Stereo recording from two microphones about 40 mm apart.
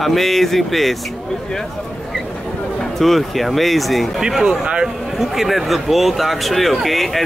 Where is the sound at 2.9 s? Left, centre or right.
Centre.